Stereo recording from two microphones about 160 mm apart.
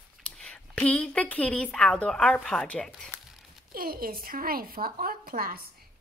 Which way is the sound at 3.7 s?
65° right (ahead or behind).